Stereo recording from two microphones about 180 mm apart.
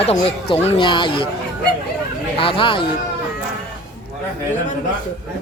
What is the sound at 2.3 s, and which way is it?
Speech, 30° left (ahead or behind).